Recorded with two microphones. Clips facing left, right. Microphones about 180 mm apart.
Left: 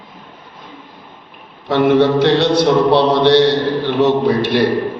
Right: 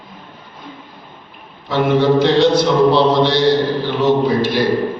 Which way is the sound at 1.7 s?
65° left (ahead or behind).